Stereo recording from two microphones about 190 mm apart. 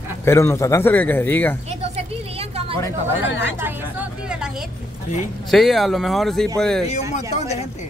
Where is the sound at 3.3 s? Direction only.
75° left (ahead or behind).